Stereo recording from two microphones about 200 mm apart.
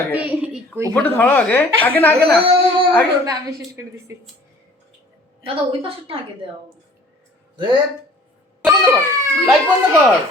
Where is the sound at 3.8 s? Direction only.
10° right (ahead or behind).